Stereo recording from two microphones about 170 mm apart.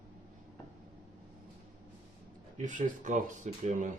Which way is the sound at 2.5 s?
45° right (ahead or behind).